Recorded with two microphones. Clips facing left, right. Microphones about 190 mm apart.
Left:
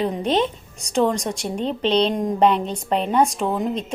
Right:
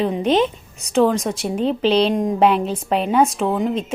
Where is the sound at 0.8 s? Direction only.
Centre (ahead or behind).